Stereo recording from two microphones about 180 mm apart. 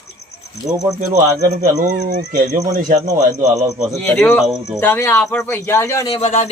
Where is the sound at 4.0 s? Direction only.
5° left (ahead or behind).